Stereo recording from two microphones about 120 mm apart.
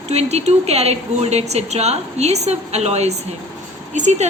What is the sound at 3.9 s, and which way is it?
Speech, 80° right.